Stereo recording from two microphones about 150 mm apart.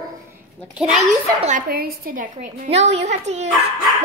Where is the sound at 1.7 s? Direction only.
85° right.